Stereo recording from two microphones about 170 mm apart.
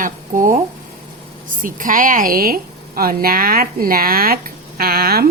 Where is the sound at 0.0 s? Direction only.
50° right (ahead or behind).